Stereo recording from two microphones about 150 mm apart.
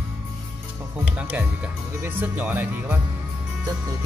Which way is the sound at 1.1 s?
10° right (ahead or behind).